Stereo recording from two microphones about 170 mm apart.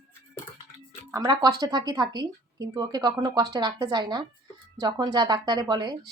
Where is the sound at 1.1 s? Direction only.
20° right (ahead or behind).